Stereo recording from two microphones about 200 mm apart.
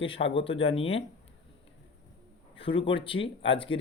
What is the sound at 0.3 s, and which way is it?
Speech, 25° left (ahead or behind).